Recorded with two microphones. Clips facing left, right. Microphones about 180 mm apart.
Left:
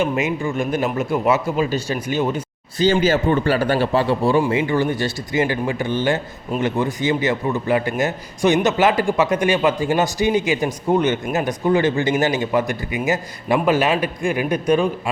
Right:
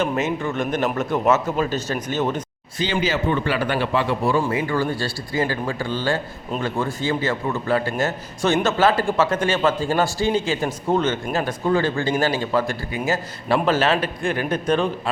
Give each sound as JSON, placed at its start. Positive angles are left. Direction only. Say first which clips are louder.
{"t": 0.0, "sound": "a man's voice", "louder": "left 2 dB", "side_deg": 10}
{"t": 2.7, "sound": "a man's voice", "louder": "left 6 dB", "side_deg": 45}